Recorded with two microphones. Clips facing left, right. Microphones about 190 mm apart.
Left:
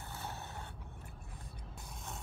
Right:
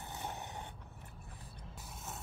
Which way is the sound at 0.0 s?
15° right (ahead or behind).